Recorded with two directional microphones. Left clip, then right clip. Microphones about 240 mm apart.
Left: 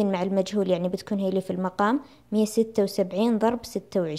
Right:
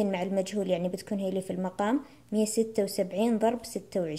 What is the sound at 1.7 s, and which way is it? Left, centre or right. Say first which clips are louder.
A woman's voice: left 5 dB; left.